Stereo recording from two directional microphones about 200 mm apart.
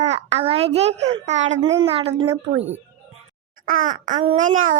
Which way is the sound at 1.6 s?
20° right (ahead or behind).